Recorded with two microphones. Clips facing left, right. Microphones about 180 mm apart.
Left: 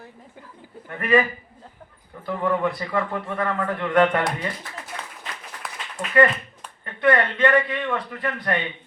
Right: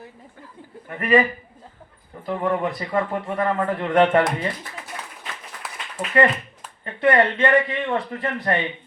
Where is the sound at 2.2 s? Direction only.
20° right (ahead or behind).